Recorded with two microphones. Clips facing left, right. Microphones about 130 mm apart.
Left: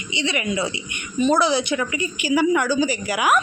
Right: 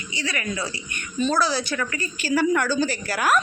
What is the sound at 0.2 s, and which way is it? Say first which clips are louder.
Speech: left 5 dB; 20° left (ahead or behind).